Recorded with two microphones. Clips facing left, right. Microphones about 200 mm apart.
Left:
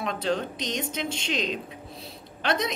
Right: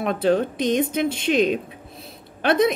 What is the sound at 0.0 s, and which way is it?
Speech, 55° right (ahead or behind).